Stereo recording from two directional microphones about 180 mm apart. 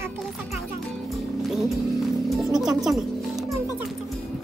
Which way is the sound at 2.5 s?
Centre (ahead or behind).